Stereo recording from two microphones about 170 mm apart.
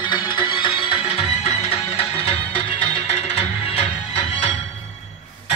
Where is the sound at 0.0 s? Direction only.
30° left (ahead or behind).